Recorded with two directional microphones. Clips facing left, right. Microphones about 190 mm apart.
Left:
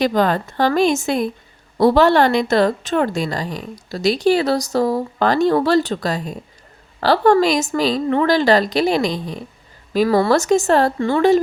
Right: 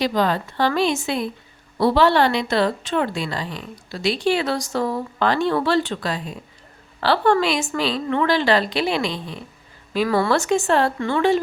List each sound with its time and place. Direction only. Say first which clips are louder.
0.0 s a woman's voice: left 4 dB; 50° left (ahead or behind)